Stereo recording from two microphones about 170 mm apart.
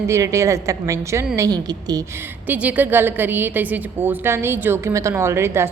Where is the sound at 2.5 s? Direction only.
10° right (ahead or behind).